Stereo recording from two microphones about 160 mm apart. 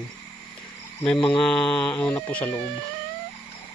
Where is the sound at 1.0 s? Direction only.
30° left (ahead or behind).